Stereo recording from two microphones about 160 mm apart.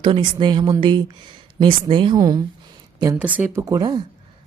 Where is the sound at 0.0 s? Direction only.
30° right (ahead or behind).